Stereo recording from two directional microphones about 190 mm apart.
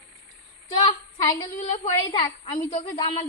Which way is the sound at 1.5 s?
40° left (ahead or behind).